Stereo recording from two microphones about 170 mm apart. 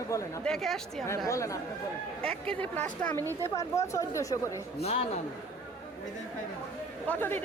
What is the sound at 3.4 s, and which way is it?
Speech, 20° left (ahead or behind).